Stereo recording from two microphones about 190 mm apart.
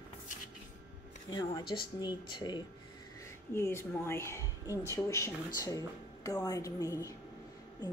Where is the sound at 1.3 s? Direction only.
20° left (ahead or behind).